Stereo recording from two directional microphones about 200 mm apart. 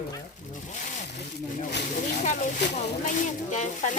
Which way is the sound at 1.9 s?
35° left (ahead or behind).